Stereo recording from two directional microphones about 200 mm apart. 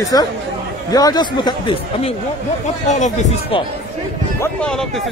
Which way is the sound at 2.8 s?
35° left (ahead or behind).